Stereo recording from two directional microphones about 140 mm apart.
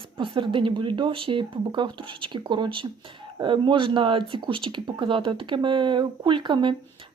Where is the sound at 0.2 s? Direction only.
35° right (ahead or behind).